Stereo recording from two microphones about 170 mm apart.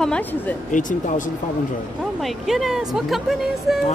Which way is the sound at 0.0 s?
5° left (ahead or behind).